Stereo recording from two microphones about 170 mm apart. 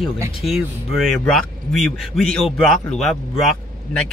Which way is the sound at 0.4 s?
Centre (ahead or behind).